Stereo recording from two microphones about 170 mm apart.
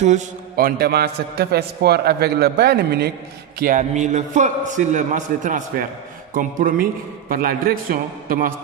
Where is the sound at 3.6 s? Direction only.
50° right (ahead or behind).